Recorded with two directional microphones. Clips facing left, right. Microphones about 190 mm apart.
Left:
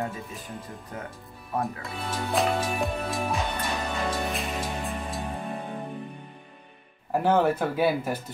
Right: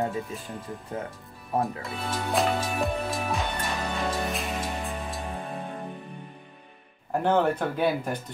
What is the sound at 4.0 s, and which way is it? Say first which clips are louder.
Music: right 1 dB; centre (ahead or behind).